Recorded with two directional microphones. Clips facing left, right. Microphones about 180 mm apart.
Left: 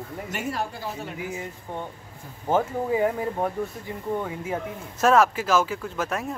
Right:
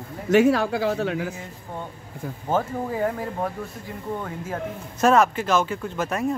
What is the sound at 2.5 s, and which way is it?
Speech, 10° left (ahead or behind).